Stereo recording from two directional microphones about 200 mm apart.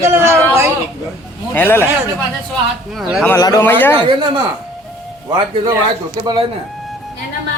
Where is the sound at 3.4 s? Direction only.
15° left (ahead or behind).